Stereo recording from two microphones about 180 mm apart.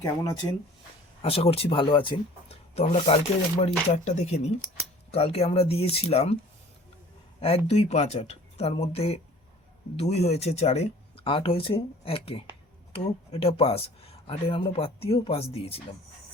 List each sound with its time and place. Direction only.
1.2 s speech: 35° left (ahead or behind)
7.4 s speech: 35° left (ahead or behind)